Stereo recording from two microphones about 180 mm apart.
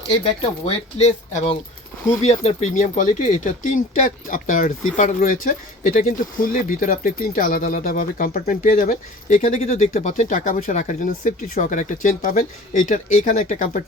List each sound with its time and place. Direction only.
0.3 s speech: 35° left (ahead or behind)